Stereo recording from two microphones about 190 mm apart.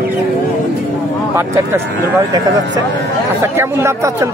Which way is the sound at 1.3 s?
15° right (ahead or behind).